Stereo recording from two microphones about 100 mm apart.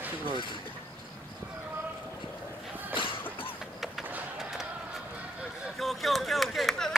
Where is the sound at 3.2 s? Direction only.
20° left (ahead or behind).